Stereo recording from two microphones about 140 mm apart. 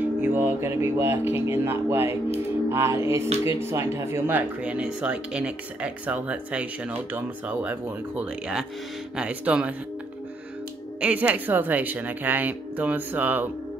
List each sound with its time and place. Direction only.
0.0 s speech: 15° right (ahead or behind)
2.7 s music: 20° right (ahead or behind)
3.4 s speech: 20° right (ahead or behind)
11.0 s speech: 10° right (ahead or behind)